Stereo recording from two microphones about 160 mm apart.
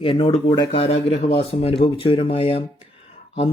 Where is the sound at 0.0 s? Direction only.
35° left (ahead or behind).